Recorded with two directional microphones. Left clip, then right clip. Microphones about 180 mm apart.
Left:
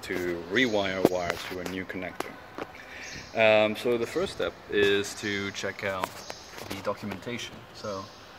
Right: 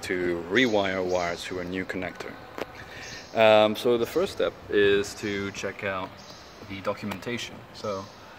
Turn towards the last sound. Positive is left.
turn(degrees=-20)  # may be behind; listen again after turning